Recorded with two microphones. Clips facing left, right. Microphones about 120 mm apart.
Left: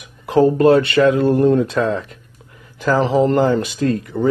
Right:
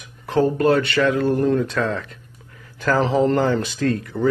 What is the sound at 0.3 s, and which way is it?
Speech, 25° left (ahead or behind).